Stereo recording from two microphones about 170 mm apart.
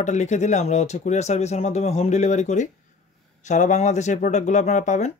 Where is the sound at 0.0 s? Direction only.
45° left (ahead or behind).